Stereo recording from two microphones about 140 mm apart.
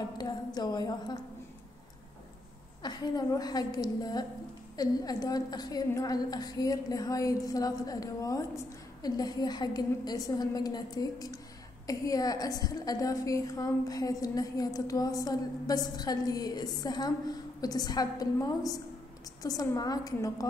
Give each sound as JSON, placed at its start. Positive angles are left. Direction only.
{"t": 0.2, "sound": "a woman's voice", "side_deg": 30}
{"t": 2.8, "sound": "a woman's voice", "side_deg": 30}